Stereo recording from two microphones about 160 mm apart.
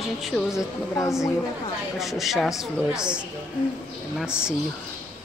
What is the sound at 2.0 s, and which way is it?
A woman's voice, centre (ahead or behind).